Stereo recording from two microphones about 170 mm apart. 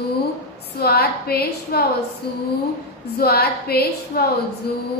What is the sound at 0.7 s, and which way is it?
A woman's voice, 65° left (ahead or behind).